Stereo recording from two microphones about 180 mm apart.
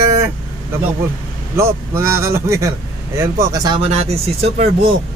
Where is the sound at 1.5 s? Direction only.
15° right (ahead or behind).